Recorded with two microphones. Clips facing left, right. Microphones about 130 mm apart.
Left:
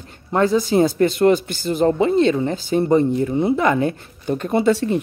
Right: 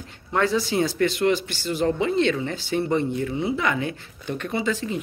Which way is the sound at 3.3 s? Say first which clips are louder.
Left 7 dB; 50° left (ahead or behind).